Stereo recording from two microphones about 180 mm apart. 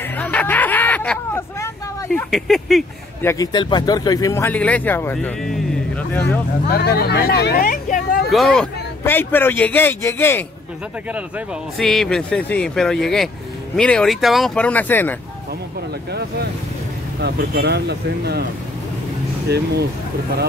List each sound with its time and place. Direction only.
0.2 s hubbub: 10° left (ahead or behind)
2.1 s speech: centre (ahead or behind)
3.2 s a man's voice: 15° left (ahead or behind)
6.7 s speech: 60° left (ahead or behind)
8.3 s speech: centre (ahead or behind)
11.1 s speech: 5° right (ahead or behind)
16.1 s speech: 65° right (ahead or behind)
19.5 s speech: 65° right (ahead or behind)